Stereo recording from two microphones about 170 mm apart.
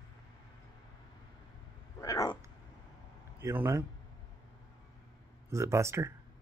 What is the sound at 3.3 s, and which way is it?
Speech, 15° right (ahead or behind).